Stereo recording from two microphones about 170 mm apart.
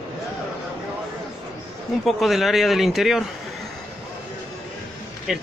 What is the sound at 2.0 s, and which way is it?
Speech, centre (ahead or behind).